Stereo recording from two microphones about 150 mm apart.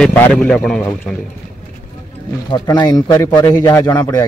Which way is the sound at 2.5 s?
25° left (ahead or behind).